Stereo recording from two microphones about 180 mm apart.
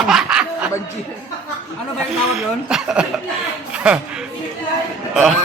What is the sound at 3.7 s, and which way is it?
Music, 5° right (ahead or behind).